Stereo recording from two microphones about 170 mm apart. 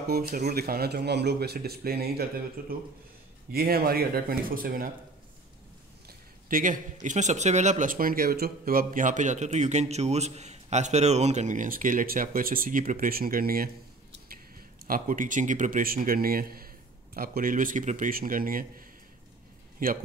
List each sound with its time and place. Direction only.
0.0 s a man's voice: 65° right (ahead or behind)
6.0 s speech: 55° right (ahead or behind)
14.9 s a man's voice: 50° right (ahead or behind)